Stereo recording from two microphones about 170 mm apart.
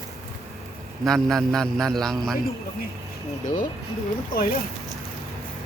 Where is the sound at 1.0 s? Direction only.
Centre (ahead or behind).